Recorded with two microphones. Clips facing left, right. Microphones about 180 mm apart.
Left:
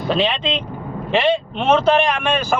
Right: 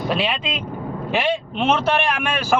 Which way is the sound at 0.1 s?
10° right (ahead or behind).